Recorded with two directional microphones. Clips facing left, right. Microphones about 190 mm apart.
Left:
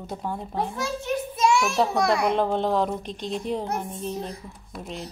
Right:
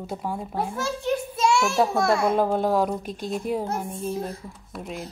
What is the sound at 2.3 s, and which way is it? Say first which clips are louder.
A woman's voice: right 1 dB; 5° right (ahead or behind).